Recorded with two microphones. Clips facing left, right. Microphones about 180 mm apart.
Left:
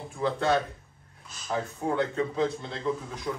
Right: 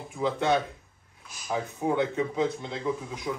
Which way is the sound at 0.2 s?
20° right (ahead or behind).